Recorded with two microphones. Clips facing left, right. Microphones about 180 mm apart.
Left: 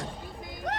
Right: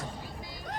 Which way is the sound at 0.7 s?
80° left.